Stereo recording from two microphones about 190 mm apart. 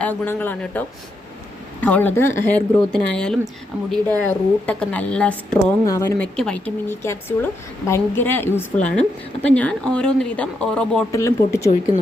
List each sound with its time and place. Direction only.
0.0 s a woman's voice: 10° left (ahead or behind)
6.3 s a woman's voice: 5° left (ahead or behind)
11.1 s a woman's voice: 15° left (ahead or behind)